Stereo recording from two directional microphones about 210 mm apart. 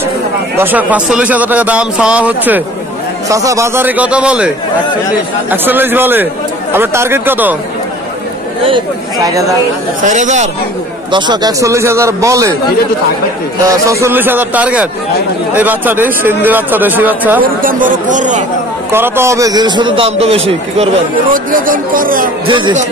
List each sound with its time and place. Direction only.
0.6 s a man's voice: 10° right (ahead or behind)
5.5 s a man's voice: 10° right (ahead or behind)
8.6 s a man's voice: 20° right (ahead or behind)
10.0 s speech: 35° right (ahead or behind)
11.1 s a man's voice: 20° right (ahead or behind)
13.8 s a man's voice: 15° right (ahead or behind)
17.4 s speech: 40° right (ahead or behind)
18.9 s a man's voice: 10° right (ahead or behind); by 22.3 s 40° right (ahead or behind)
22.5 s a man's voice: 20° right (ahead or behind)